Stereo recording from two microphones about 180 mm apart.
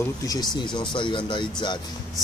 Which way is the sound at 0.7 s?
25° left (ahead or behind).